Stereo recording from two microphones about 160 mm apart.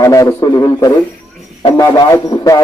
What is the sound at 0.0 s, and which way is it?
A man's voice, 20° left (ahead or behind).